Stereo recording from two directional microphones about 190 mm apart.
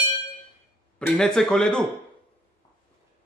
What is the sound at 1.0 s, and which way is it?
Speech, 5° left (ahead or behind).